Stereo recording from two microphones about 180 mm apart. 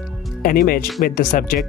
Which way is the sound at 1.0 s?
50° left (ahead or behind).